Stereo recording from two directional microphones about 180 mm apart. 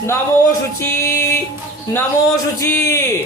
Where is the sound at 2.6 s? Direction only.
20° left (ahead or behind).